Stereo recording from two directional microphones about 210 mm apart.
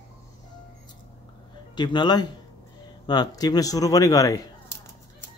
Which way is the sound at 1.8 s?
20° left (ahead or behind).